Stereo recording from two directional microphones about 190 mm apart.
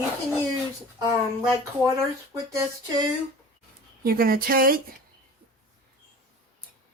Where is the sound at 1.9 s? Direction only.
15° right (ahead or behind).